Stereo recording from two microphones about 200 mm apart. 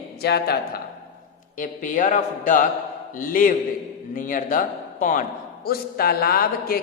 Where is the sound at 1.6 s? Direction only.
40° left (ahead or behind).